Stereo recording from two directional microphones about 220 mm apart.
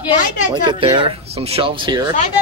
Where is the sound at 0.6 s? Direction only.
25° right (ahead or behind).